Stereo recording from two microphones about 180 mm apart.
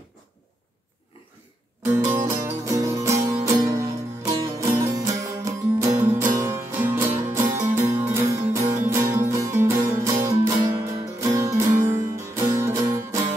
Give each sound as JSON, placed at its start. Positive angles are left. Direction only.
{"t": 1.9, "sound": "music", "side_deg": -15}